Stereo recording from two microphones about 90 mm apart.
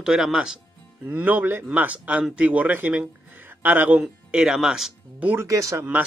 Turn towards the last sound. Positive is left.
turn(degrees=-40)  # may be behind; listen again after turning